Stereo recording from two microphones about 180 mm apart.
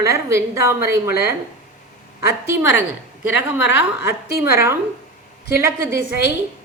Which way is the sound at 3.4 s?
10° right (ahead or behind).